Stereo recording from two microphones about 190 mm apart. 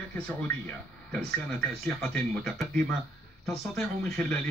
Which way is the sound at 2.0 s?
Centre (ahead or behind).